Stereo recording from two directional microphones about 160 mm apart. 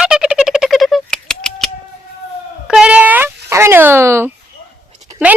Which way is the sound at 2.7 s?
5° right (ahead or behind).